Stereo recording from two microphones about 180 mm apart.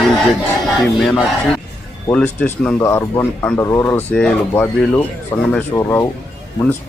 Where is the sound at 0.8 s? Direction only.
Centre (ahead or behind).